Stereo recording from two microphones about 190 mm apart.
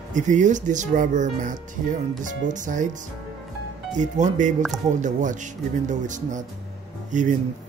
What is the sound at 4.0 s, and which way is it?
Speech, 40° right (ahead or behind).